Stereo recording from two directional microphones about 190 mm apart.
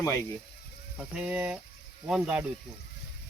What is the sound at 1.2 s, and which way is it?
Speech, 5° right (ahead or behind).